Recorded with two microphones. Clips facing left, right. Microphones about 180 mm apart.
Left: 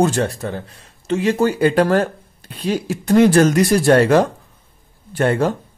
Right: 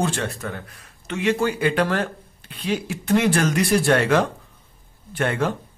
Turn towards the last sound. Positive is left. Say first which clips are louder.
# left 6 dB
turn(degrees=35)  # may be behind; listen again after turning